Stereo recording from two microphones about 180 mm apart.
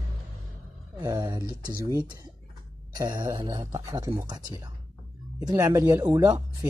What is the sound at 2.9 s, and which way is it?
Speech, 20° right (ahead or behind).